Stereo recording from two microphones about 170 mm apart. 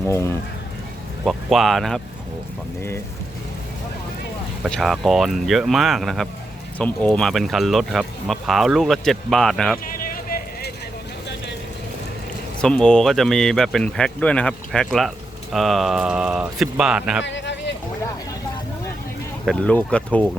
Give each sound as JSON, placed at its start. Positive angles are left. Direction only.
{"t": 0.1, "sound": "speech", "side_deg": 15}
{"t": 1.2, "sound": "speech", "side_deg": 0}
{"t": 4.7, "sound": "speech", "side_deg": 0}
{"t": 9.9, "sound": "vehicle", "side_deg": 55}
{"t": 12.6, "sound": "speech", "side_deg": 5}
{"t": 17.2, "sound": "a sound", "side_deg": 90}
{"t": 19.5, "sound": "speech", "side_deg": 5}